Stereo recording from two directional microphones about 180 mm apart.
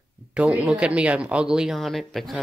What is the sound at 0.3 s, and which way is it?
Speech, 5° right (ahead or behind).